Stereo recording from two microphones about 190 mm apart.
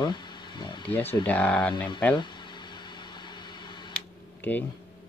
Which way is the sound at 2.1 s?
25° left (ahead or behind).